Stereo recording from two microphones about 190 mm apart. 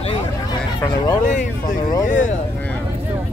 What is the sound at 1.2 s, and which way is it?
Speech, 40° left (ahead or behind).